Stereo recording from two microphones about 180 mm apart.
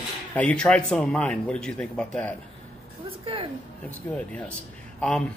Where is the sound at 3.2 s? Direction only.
30° right (ahead or behind).